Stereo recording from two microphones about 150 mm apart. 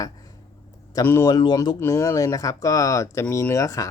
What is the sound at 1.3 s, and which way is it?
Speech, 30° left (ahead or behind).